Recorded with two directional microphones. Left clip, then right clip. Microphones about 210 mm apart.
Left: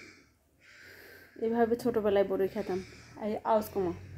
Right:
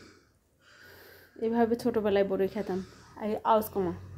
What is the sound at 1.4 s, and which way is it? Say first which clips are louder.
A woman's voice: right 1 dB; 20° right (ahead or behind).